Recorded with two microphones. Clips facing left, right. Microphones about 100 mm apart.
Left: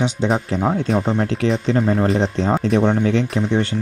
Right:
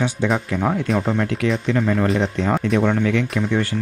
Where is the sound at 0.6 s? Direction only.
10° left (ahead or behind).